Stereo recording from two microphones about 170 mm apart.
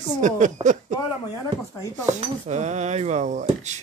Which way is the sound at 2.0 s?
45° right (ahead or behind).